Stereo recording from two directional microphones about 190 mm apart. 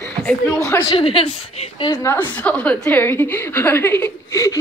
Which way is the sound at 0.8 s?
30° left (ahead or behind).